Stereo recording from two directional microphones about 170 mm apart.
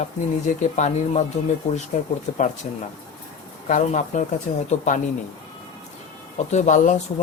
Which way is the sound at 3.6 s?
50° left (ahead or behind).